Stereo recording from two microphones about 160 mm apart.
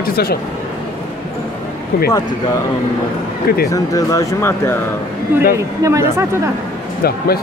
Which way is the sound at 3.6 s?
20° left (ahead or behind).